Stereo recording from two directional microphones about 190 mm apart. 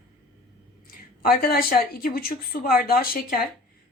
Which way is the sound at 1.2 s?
50° left (ahead or behind).